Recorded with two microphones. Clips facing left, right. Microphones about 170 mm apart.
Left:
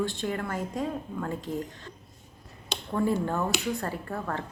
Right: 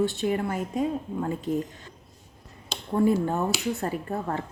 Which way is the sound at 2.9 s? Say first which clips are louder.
Right 4 dB; 20° right (ahead or behind).